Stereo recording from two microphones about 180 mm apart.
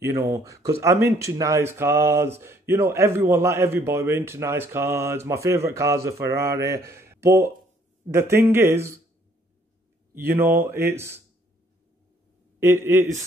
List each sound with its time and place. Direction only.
0.0 s speech: 15° right (ahead or behind)
10.1 s speech: 10° right (ahead or behind)
12.5 s a man's voice: 15° right (ahead or behind)